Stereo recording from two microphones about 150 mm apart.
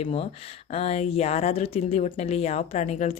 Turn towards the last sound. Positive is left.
turn(degrees=50)  # may be behind; listen again after turning